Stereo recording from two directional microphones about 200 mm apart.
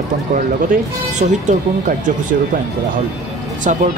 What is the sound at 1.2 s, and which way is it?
Speech, 35° right (ahead or behind).